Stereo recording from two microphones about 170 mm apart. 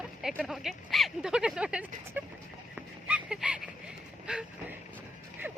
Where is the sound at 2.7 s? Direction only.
5° right (ahead or behind).